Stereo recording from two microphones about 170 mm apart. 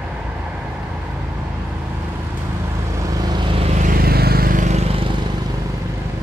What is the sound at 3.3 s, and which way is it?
Vehicle, 30° right (ahead or behind).